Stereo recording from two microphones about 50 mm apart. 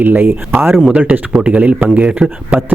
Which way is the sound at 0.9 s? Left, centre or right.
Right.